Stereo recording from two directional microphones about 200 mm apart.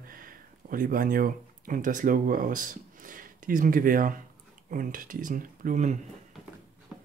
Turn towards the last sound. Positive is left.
turn(degrees=-35)  # may be behind; listen again after turning